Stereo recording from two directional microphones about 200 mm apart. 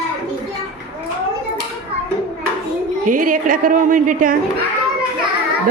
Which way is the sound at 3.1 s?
40° right (ahead or behind).